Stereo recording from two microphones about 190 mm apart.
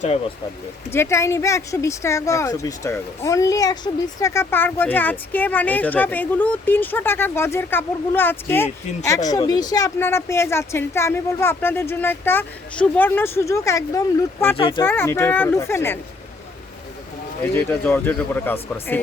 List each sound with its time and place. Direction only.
0.9 s a woman's voice: 15° left (ahead or behind)
14.5 s speech: 30° left (ahead or behind)
14.8 s a woman's voice: 10° left (ahead or behind)
17.5 s a woman's voice: 10° left (ahead or behind)